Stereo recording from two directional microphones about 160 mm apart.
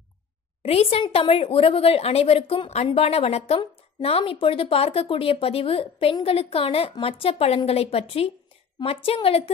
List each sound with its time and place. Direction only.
0.6 s a woman's voice: 40° left (ahead or behind)